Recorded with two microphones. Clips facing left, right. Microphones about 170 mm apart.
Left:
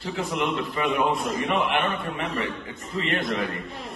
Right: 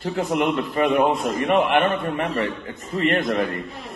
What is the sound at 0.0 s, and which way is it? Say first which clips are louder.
A man's voice: right 5 dB; 50° right (ahead or behind).